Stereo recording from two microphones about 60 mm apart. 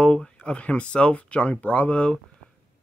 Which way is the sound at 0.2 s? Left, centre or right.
Centre.